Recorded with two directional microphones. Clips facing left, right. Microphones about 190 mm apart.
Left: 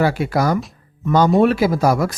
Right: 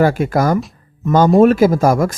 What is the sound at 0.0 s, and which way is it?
Speech, 50° right (ahead or behind).